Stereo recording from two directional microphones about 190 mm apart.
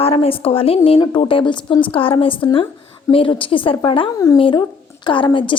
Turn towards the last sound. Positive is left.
turn(degrees=25)  # may be behind; listen again after turning